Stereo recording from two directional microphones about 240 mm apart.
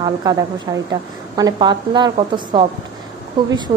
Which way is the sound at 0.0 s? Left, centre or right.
Centre.